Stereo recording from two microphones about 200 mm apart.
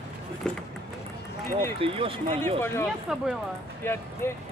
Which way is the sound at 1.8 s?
25° right (ahead or behind).